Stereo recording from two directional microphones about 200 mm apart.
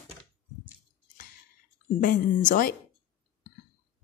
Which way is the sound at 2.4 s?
45° left (ahead or behind).